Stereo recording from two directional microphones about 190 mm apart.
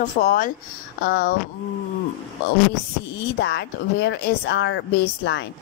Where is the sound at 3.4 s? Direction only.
65° left (ahead or behind).